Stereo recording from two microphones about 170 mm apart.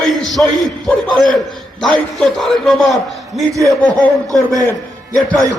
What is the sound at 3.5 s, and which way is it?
Speech, 20° right (ahead or behind).